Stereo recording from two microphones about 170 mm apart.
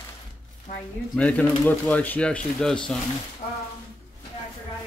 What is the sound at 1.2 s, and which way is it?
Speech, 10° left (ahead or behind).